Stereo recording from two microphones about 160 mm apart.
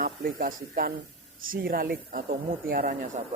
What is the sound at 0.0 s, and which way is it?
Speech, 60° right (ahead or behind).